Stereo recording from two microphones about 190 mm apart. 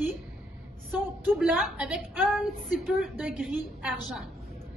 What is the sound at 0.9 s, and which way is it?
A woman's voice, 5° right (ahead or behind).